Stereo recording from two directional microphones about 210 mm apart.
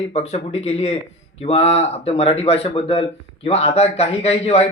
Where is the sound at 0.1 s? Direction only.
30° left (ahead or behind).